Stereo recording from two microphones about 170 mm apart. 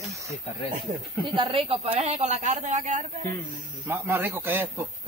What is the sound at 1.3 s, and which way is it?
A woman's voice, 35° right (ahead or behind).